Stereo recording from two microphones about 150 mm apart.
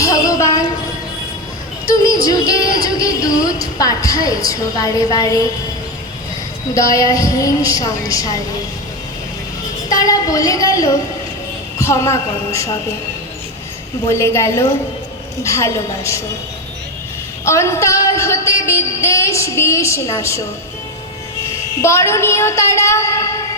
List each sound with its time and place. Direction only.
0.0 s a sound: 20° left (ahead or behind)
2.8 s a woman's voice: 25° left (ahead or behind)
6.7 s speech: 20° left (ahead or behind)
9.9 s speech: 25° left (ahead or behind)
14.1 s speech: 20° left (ahead or behind)
17.4 s speech: 20° left (ahead or behind)
21.8 s speech: 20° left (ahead or behind)